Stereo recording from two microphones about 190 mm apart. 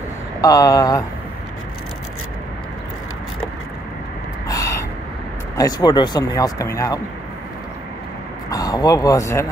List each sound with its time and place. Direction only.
0.4 s speech: 20° left (ahead or behind)
4.5 s gasp: 20° left (ahead or behind)
5.6 s speech: 20° left (ahead or behind)
8.5 s speech: 20° left (ahead or behind)